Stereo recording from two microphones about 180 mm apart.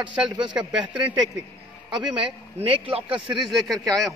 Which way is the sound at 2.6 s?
30° right (ahead or behind).